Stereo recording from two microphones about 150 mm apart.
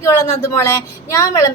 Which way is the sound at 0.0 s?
20° left (ahead or behind).